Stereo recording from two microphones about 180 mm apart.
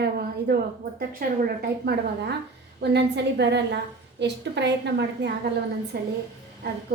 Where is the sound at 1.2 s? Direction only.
50° right (ahead or behind).